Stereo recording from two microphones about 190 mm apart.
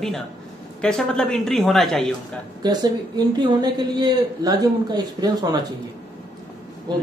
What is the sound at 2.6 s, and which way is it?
Speech, 20° right (ahead or behind).